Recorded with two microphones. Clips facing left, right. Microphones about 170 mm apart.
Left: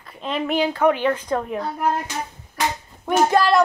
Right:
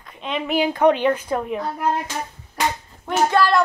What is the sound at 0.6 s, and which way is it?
Speech, 15° right (ahead or behind).